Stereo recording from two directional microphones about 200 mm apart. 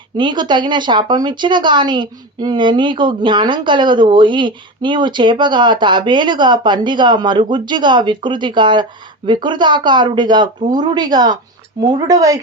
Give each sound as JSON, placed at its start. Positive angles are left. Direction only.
{"t": 0.2, "sound": "speech", "side_deg": -25}